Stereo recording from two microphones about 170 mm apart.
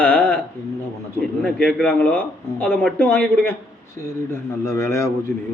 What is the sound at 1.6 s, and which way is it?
Speech, 5° left (ahead or behind).